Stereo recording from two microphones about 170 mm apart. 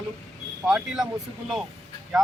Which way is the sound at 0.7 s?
5° right (ahead or behind).